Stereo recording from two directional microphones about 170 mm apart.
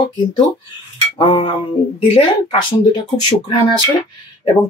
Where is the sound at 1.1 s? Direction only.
30° left (ahead or behind).